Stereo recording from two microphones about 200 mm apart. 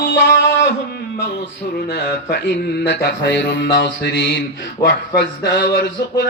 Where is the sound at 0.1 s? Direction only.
60° left (ahead or behind).